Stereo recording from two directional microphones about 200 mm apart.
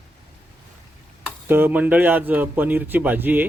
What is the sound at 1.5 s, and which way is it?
Speech, 10° right (ahead or behind).